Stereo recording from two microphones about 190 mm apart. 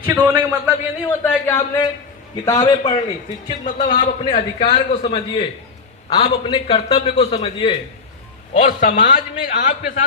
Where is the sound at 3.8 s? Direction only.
45° left (ahead or behind).